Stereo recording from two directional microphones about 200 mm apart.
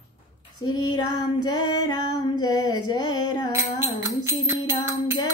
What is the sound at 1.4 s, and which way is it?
Female singing, 20° left (ahead or behind).